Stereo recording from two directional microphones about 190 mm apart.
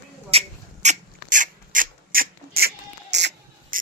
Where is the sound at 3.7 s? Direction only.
45° right (ahead or behind).